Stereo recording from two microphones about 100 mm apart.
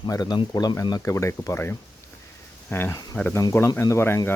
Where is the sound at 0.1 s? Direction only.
40° left (ahead or behind).